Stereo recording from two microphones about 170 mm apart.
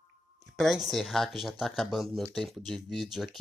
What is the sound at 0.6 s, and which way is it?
Speech, centre (ahead or behind).